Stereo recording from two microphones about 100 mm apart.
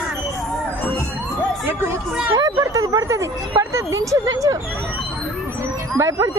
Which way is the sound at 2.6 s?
35° right (ahead or behind).